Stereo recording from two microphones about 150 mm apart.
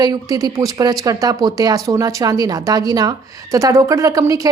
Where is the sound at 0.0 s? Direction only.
25° right (ahead or behind).